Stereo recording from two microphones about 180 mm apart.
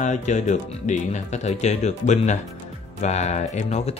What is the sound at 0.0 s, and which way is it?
Speech, 40° left (ahead or behind).